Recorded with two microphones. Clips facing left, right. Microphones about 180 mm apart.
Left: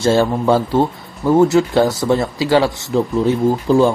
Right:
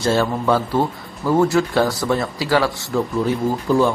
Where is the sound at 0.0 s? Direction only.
25° left (ahead or behind).